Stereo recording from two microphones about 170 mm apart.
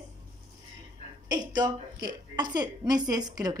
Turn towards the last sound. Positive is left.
turn(degrees=-20)  # may be behind; listen again after turning